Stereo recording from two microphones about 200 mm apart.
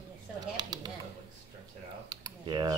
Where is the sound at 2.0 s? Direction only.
20° right (ahead or behind).